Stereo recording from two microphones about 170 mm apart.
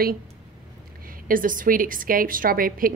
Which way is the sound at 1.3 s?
55° right (ahead or behind).